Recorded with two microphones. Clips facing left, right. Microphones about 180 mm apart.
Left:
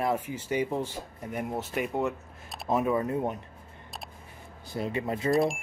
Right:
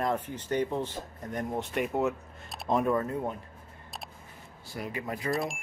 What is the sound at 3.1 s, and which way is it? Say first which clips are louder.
Speech: left 3 dB; 20° left (ahead or behind).